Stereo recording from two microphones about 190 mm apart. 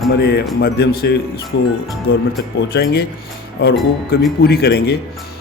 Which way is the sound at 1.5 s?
70° left (ahead or behind).